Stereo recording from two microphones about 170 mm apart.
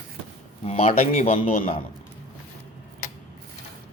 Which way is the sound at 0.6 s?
35° left (ahead or behind).